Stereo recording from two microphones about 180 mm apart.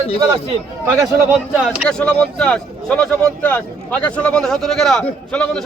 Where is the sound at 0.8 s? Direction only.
10° right (ahead or behind).